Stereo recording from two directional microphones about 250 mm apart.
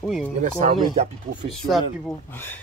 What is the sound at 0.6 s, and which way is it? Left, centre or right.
Speech, right.